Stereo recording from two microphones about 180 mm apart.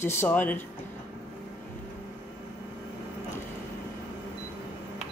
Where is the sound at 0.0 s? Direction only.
10° left (ahead or behind).